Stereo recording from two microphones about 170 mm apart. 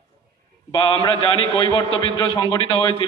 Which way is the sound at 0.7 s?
30° left (ahead or behind).